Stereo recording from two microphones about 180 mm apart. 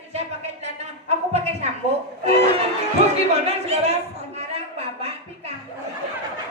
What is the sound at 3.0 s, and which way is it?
Speech, 35° right (ahead or behind).